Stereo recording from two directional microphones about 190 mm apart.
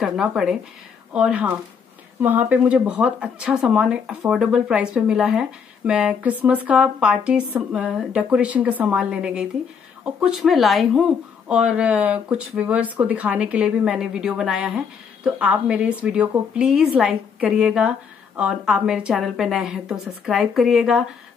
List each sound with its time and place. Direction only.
0.0 s a woman's voice: centre (ahead or behind)